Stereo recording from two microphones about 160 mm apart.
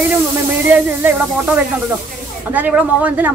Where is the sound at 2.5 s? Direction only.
10° right (ahead or behind).